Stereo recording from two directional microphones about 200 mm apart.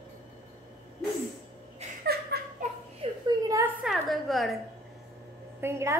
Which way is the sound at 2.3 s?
55° right (ahead or behind).